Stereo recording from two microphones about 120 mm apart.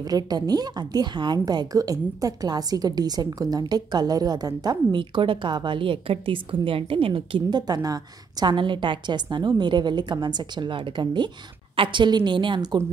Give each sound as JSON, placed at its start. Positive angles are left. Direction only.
{"t": 0.0, "sound": "a woman's voice", "side_deg": -35}